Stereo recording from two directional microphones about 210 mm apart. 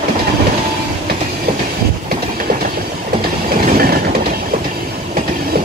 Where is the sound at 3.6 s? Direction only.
45° right (ahead or behind).